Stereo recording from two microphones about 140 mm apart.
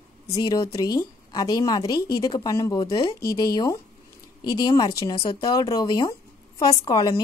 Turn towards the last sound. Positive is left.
turn(degrees=30)  # may be behind; listen again after turning